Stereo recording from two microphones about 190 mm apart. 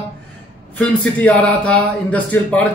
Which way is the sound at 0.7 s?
5° left (ahead or behind).